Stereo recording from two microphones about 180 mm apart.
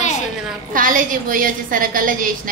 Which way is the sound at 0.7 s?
50° right (ahead or behind).